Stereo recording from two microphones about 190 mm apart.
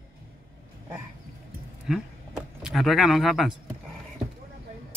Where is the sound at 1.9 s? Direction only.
Centre (ahead or behind).